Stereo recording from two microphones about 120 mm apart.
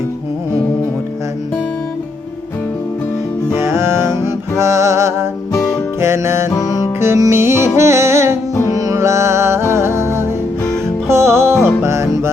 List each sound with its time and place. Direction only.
3.6 s music: 20° right (ahead or behind)
6.5 s music: 30° left (ahead or behind)
7.0 s music: 20° right (ahead or behind)